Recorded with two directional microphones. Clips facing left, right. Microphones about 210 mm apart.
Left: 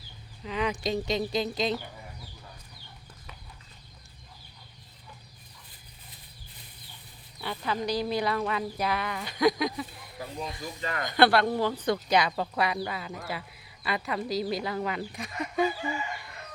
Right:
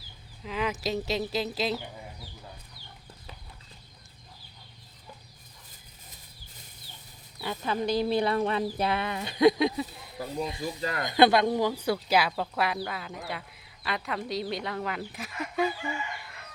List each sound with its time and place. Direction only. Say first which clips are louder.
0.4 s speech: left 1 dB; 5° right (ahead or behind)
7.4 s speech: right 2 dB; 25° right (ahead or behind)
10.8 s speech: left 1 dB; 35° right (ahead or behind)
11.0 s speech: right 1 dB; 20° right (ahead or behind); by 15.7 s centre (ahead or behind)